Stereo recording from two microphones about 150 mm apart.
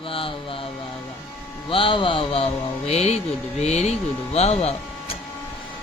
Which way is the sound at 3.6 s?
50° left (ahead or behind).